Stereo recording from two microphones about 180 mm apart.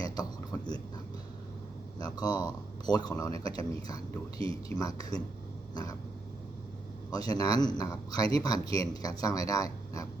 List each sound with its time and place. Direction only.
0.0 s a sound: 20° left (ahead or behind)
2.0 s speech: 20° left (ahead or behind)
5.7 s throat clearing: 20° left (ahead or behind)
7.1 s speech: 20° left (ahead or behind)